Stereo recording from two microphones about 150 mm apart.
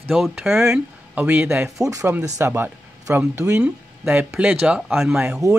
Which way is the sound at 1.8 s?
20° right (ahead or behind).